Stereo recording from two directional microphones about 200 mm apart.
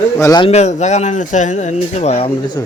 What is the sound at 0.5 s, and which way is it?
Speech, 35° left (ahead or behind).